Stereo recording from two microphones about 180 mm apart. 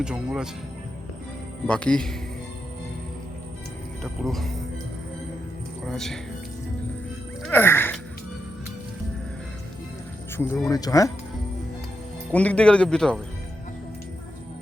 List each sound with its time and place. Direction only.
0.0 s speech: 5° right (ahead or behind)
1.6 s speech: 5° left (ahead or behind)
4.0 s speech: centre (ahead or behind)
5.9 s speech: centre (ahead or behind)
7.4 s music: 10° left (ahead or behind)
10.3 s speech: 15° left (ahead or behind)
12.3 s speech: 5° left (ahead or behind)